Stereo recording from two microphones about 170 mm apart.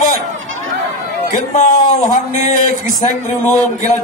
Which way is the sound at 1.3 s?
50° left (ahead or behind).